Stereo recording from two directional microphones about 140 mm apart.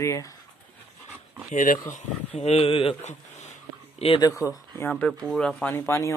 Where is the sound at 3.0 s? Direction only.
55° left (ahead or behind).